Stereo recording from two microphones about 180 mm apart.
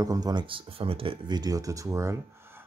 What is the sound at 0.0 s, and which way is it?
Speech, 20° right (ahead or behind).